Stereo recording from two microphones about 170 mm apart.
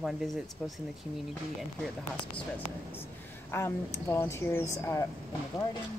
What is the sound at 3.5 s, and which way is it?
A woman's voice, 15° left (ahead or behind).